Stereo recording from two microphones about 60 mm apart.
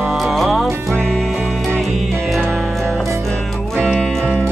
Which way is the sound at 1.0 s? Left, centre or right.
Centre.